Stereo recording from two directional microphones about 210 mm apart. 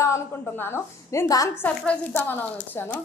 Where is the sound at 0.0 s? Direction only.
15° left (ahead or behind).